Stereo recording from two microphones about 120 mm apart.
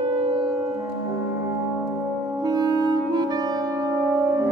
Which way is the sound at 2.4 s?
35° right (ahead or behind).